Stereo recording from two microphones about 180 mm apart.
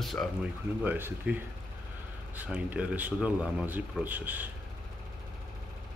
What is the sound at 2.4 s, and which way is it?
Speech, 10° right (ahead or behind).